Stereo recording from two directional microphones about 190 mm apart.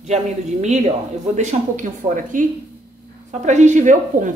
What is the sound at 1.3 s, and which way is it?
A woman's voice, 40° right (ahead or behind).